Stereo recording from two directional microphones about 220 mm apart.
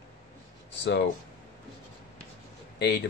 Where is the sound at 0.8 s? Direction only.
50° left (ahead or behind).